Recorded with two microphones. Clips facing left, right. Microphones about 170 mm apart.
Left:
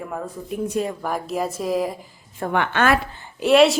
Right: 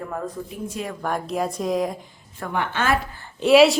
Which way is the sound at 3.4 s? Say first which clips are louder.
Right 1 dB; centre (ahead or behind).